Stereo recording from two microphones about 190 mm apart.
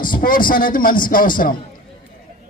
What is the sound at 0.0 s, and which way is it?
A man's voice, 45° left (ahead or behind).